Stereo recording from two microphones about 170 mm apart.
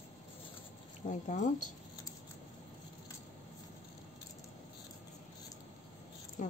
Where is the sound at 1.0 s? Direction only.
45° left (ahead or behind).